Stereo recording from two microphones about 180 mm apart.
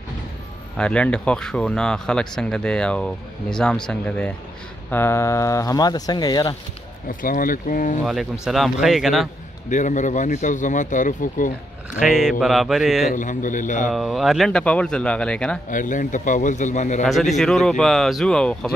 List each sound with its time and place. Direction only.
0.7 s speech: 5° left (ahead or behind); by 6.5 s 20° left (ahead or behind)
7.1 s speech: 50° left (ahead or behind)
8.0 s speech: centre (ahead or behind)
9.7 s speech: 45° left (ahead or behind)
12.0 s speech: centre (ahead or behind)
13.1 s speech: 45° left (ahead or behind)
13.8 s speech: centre (ahead or behind)
15.7 s speech: 45° left (ahead or behind)
17.0 s speech: centre (ahead or behind)